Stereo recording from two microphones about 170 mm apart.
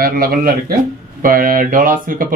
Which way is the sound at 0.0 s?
55° right (ahead or behind).